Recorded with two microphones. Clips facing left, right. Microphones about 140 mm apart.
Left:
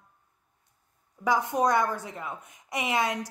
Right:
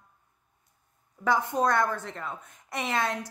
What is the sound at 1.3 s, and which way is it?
A woman's voice, 15° left (ahead or behind).